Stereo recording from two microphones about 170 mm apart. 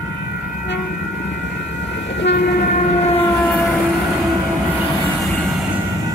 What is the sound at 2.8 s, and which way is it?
Train, 40° left (ahead or behind).